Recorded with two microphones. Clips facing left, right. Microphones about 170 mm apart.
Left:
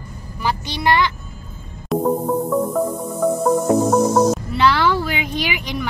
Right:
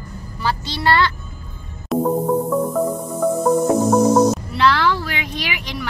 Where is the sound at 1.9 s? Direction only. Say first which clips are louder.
Right 1 dB; centre (ahead or behind).